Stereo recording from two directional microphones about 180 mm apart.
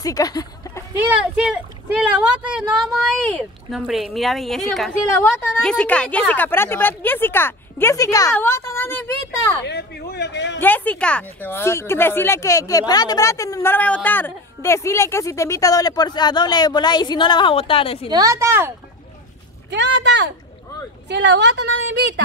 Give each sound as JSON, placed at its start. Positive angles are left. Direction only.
{"t": 0.0, "sound": "speech", "side_deg": 20}
{"t": 1.0, "sound": "speech", "side_deg": -5}
{"t": 9.6, "sound": "a sound", "side_deg": 70}
{"t": 10.6, "sound": "speech", "side_deg": 10}
{"t": 18.0, "sound": "a woman's voice", "side_deg": -20}
{"t": 19.7, "sound": "a woman's voice", "side_deg": -75}